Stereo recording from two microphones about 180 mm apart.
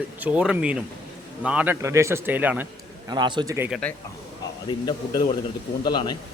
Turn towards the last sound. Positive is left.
turn(degrees=25)  # may be behind; listen again after turning